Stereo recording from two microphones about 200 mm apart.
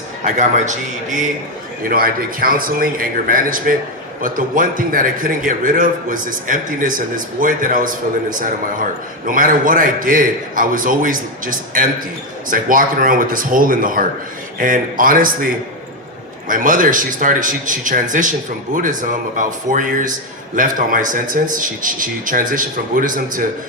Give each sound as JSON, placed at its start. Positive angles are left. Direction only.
{"t": 0.3, "sound": "a man's voice", "side_deg": -35}
{"t": 16.5, "sound": "a man's voice", "side_deg": -45}